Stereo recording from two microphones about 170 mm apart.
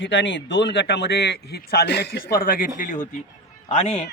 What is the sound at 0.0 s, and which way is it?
Speech, 90° left.